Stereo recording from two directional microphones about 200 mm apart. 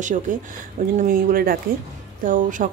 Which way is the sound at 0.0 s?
40° right (ahead or behind).